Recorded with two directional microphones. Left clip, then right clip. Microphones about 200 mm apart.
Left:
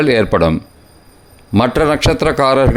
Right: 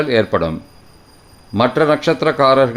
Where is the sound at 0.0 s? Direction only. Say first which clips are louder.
Left 3 dB; 35° left (ahead or behind).